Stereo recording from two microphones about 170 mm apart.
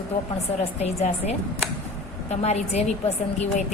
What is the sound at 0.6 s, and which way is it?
A woman's voice, 40° left (ahead or behind).